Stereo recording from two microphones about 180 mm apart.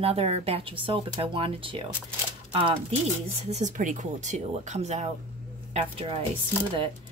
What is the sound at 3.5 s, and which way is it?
Speech, 40° right (ahead or behind).